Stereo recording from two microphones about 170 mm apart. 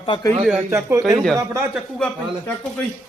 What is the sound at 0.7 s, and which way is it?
Speech, 15° right (ahead or behind).